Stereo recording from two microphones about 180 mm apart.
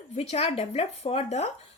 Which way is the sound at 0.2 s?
35° left (ahead or behind).